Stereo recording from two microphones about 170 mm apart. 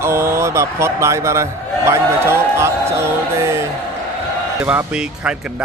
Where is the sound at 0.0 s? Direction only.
15° right (ahead or behind).